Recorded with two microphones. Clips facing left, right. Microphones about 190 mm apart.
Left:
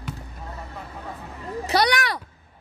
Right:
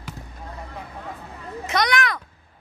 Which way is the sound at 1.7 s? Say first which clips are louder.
Left 1 dB; 35° left (ahead or behind).